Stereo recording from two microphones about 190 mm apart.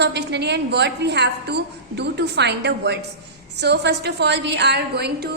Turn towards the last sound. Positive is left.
turn(degrees=-60)  # may be behind; listen again after turning